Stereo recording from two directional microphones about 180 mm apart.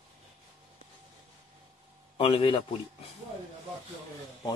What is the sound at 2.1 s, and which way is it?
Speech, 30° left (ahead or behind).